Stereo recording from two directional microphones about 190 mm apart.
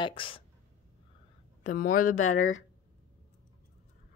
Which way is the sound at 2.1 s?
90° left.